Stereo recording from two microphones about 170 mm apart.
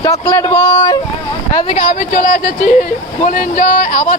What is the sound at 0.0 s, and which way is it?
Speech, 20° left (ahead or behind).